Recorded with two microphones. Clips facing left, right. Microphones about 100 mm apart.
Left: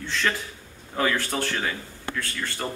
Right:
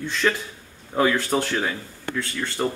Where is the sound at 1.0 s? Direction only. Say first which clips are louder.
Right 4 dB; 20° right (ahead or behind).